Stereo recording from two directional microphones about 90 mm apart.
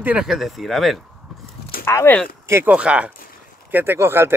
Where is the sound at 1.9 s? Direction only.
30° left (ahead or behind).